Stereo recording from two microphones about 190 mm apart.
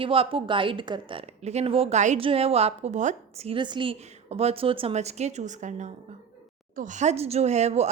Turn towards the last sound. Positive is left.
turn(degrees=-35)  # may be behind; listen again after turning